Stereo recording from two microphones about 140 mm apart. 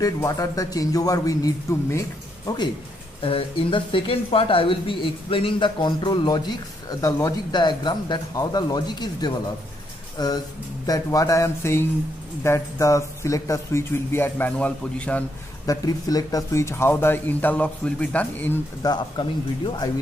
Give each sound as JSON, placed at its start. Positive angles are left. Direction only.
{"t": 0.0, "sound": "speech", "side_deg": 25}
{"t": 15.6, "sound": "speech", "side_deg": 25}
{"t": 18.8, "sound": "speech", "side_deg": 30}